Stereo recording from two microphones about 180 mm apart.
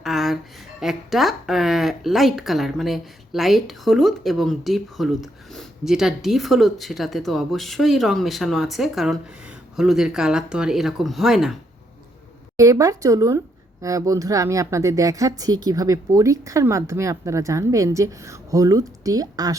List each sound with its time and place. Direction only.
0.0 s a sound: centre (ahead or behind)
0.8 s speech: centre (ahead or behind)
12.5 s speech: 20° right (ahead or behind)